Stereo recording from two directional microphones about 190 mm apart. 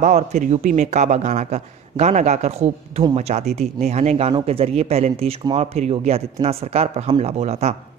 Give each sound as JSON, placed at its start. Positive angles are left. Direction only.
{"t": 0.0, "sound": "a man's voice", "side_deg": -40}